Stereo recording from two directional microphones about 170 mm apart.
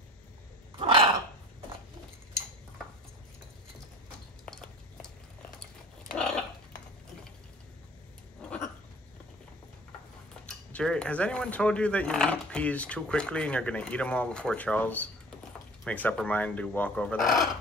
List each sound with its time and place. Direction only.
0.7 s dog: 30° right (ahead or behind)
4.5 s a sound: 5° left (ahead or behind)
10.4 s speech: 5° left (ahead or behind)